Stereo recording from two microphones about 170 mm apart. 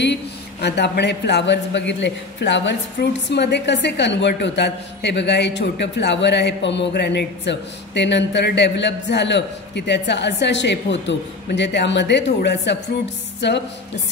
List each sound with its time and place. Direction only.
0.0 s a man's voice: 85° left